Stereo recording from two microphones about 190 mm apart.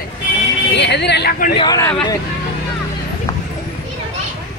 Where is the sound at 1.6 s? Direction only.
15° left (ahead or behind).